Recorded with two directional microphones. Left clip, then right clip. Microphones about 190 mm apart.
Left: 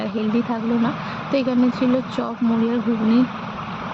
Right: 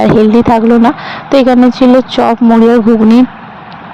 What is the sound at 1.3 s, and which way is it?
Speech, 50° right (ahead or behind).